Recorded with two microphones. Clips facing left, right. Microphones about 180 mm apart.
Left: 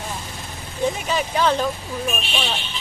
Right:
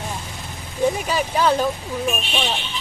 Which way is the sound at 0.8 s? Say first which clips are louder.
Right 2 dB; 10° right (ahead or behind).